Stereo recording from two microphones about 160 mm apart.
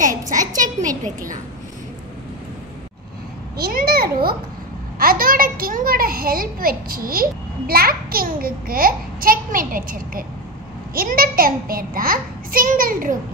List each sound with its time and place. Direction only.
0.6 s a child's voice: 50° right (ahead or behind)
3.5 s a child's voice: 70° right (ahead or behind)